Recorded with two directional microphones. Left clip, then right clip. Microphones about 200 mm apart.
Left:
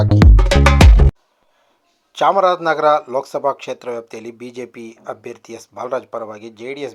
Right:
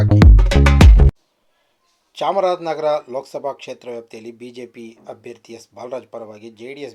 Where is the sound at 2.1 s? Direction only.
15° left (ahead or behind).